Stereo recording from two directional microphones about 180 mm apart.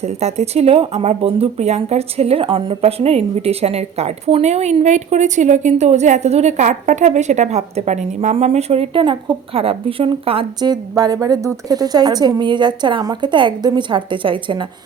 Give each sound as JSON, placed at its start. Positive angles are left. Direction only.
{"t": 0.0, "sound": "speech", "side_deg": -35}